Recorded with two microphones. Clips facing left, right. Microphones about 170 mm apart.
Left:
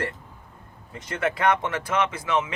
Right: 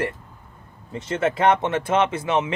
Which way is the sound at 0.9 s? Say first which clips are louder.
Right 4 dB; 25° right (ahead or behind).